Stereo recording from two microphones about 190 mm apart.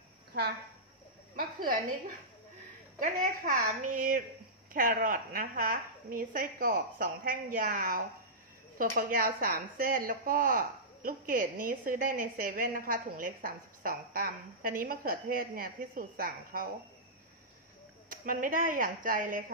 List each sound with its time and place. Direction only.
1.3 s speech: 45° right (ahead or behind)
18.1 s speech: 45° right (ahead or behind)